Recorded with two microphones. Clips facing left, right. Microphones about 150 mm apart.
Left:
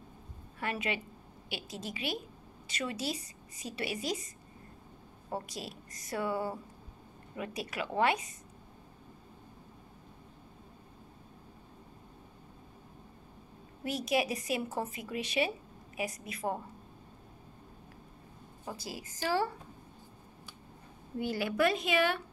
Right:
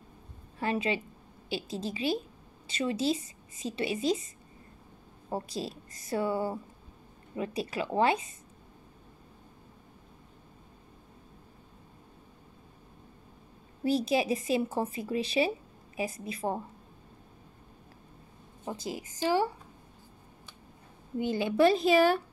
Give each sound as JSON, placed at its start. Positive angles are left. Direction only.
{"t": 0.6, "sound": "speech", "side_deg": -30}
{"t": 5.3, "sound": "speech", "side_deg": -25}
{"t": 13.8, "sound": "speech", "side_deg": -30}
{"t": 18.6, "sound": "speech", "side_deg": -20}
{"t": 21.2, "sound": "speech", "side_deg": -20}